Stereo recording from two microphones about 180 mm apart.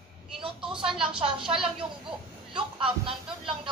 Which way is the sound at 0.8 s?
5° right (ahead or behind).